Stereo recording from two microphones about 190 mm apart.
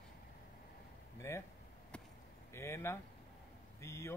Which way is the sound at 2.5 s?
15° left (ahead or behind).